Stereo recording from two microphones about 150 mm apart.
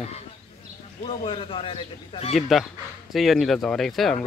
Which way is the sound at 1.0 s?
40° left (ahead or behind).